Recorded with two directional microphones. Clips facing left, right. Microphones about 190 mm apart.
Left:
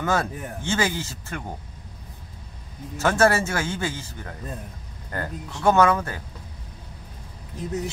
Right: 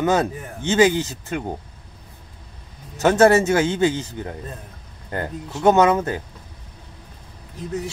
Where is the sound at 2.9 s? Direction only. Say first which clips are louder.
Right 6 dB; 20° right (ahead or behind).